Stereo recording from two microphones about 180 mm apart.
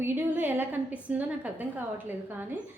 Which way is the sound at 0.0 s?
10° right (ahead or behind).